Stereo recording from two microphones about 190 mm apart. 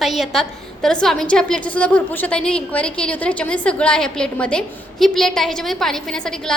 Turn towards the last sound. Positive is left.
turn(degrees=5)  # may be behind; listen again after turning